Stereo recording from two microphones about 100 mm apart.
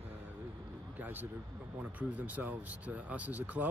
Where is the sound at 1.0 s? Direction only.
20° right (ahead or behind).